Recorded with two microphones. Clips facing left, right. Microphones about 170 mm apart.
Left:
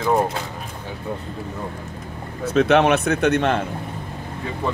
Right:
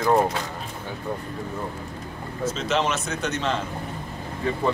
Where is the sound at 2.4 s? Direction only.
60° left (ahead or behind).